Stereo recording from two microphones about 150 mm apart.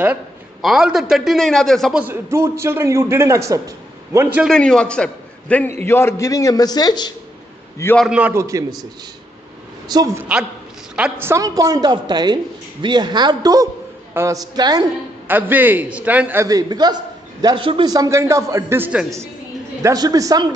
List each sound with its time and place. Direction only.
0.6 s a man's voice: 5° right (ahead or behind)
2.0 s a man's voice: 15° right (ahead or behind)
4.5 s a man's voice: 5° left (ahead or behind); by 7.2 s 30° left (ahead or behind)
8.0 s a man's voice: 10° right (ahead or behind); by 8.8 s 25° right (ahead or behind)
9.8 s a man's voice: 25° right (ahead or behind)
11.0 s a man's voice: 10° right (ahead or behind); by 14.9 s 30° right (ahead or behind)
15.2 s a man's voice: 10° right (ahead or behind)
16.4 s a man's voice: 25° right (ahead or behind); by 19.0 s 10° right (ahead or behind)
19.8 s a man's voice: 25° right (ahead or behind)